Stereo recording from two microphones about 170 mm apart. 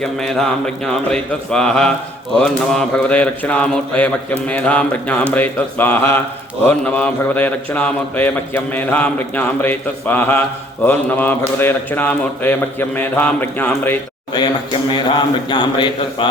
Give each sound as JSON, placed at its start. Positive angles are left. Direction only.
{"t": 0.0, "sound": "a man's voice", "side_deg": 5}
{"t": 15.1, "sound": "speech", "side_deg": 25}